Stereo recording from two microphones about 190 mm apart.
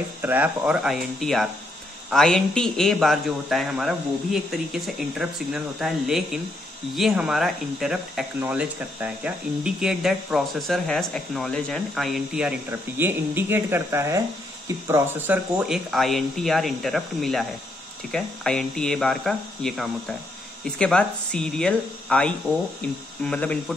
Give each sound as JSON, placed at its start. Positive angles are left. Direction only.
{"t": 0.2, "sound": "speech", "side_deg": -10}